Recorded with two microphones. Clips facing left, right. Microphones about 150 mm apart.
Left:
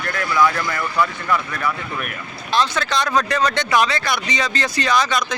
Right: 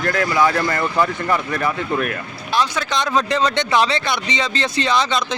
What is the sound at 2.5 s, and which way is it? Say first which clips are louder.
Speech: even; 10° right (ahead or behind).